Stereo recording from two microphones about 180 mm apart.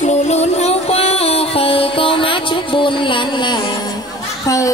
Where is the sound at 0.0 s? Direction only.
40° left (ahead or behind).